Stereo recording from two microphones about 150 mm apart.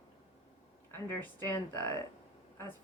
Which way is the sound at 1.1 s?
15° left (ahead or behind).